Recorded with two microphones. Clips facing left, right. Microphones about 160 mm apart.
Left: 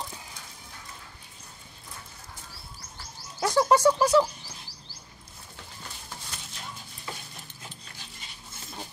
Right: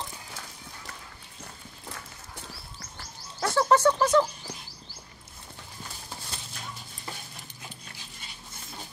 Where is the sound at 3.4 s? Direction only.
15° left (ahead or behind).